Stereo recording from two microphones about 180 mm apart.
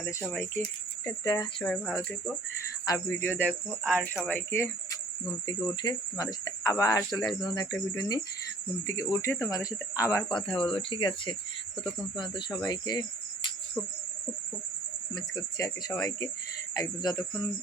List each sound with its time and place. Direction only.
0.0 s speech: 15° left (ahead or behind)
1.6 s speech: 10° left (ahead or behind)
2.8 s speech: 15° left (ahead or behind)
15.1 s speech: 20° left (ahead or behind)